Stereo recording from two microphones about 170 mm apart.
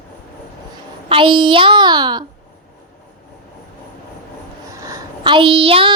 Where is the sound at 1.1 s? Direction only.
30° right (ahead or behind).